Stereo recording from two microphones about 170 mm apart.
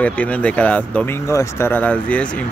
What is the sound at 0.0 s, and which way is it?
Speech, 10° left (ahead or behind).